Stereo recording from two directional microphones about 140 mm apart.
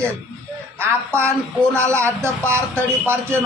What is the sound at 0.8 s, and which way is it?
A man's voice, 20° right (ahead or behind).